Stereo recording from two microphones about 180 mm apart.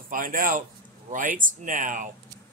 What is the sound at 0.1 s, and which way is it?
Speech, 50° right (ahead or behind).